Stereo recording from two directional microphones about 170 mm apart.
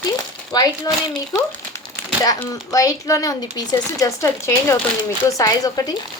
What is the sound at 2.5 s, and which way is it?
A woman's voice, 20° left (ahead or behind).